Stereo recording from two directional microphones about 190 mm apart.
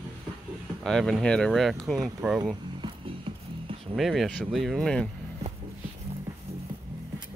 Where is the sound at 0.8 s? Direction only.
5° left (ahead or behind).